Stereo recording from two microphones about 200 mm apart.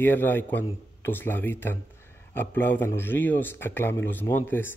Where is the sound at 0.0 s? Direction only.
10° left (ahead or behind).